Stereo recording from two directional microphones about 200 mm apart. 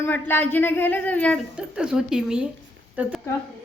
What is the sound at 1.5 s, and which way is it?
A woman's voice, 5° right (ahead or behind).